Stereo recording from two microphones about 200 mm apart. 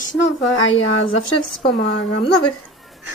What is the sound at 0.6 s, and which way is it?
Speech, 80° left.